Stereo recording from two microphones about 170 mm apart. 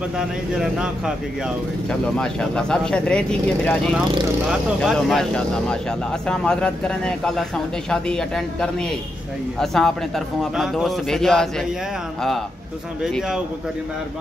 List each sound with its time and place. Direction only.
0.2 s speech: 5° right (ahead or behind)
13.0 s speech: 5° right (ahead or behind)